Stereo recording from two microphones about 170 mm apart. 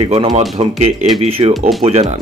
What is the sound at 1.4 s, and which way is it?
Speech, 30° right (ahead or behind).